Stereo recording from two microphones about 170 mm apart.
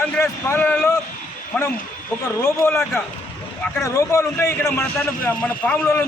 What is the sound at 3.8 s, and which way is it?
A man's voice, 15° left (ahead or behind).